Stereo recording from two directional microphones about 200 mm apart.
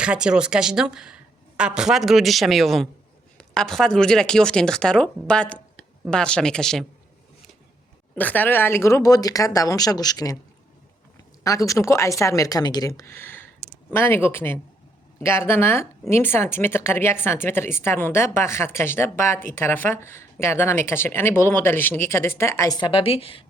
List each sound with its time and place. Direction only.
0.0 s speech: 5° right (ahead or behind)
8.1 s speech: 10° left (ahead or behind)
11.4 s speech: 15° left (ahead or behind)